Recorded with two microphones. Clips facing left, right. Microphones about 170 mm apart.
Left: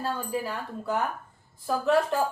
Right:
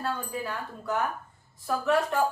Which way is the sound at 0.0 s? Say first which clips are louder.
Left 2 dB; 25° left (ahead or behind).